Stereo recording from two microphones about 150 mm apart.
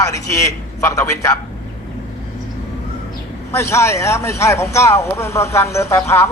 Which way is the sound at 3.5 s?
20° left (ahead or behind).